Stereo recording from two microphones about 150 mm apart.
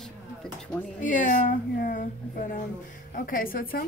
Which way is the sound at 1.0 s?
60° left (ahead or behind).